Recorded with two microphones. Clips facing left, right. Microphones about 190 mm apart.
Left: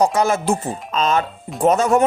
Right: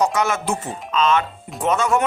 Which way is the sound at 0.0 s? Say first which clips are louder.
Left 3 dB; 30° left (ahead or behind).